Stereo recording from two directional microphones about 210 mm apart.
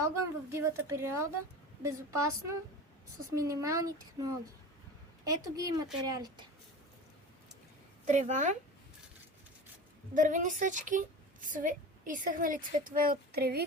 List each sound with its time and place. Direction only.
0.5 s a woman's voice: 15° right (ahead or behind)
8.0 s a woman's voice: 35° right (ahead or behind)
10.2 s a woman's voice: 40° right (ahead or behind)